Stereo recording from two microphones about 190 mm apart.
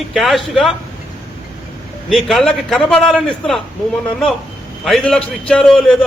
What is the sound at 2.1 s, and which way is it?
A man's voice, centre (ahead or behind).